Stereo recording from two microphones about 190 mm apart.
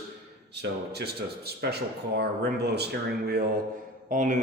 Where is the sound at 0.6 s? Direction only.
60° right (ahead or behind).